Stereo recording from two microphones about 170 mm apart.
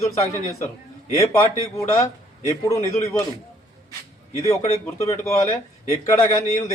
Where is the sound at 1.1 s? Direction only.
20° left (ahead or behind).